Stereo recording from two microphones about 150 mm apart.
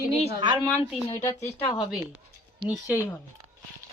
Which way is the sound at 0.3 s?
35° right (ahead or behind).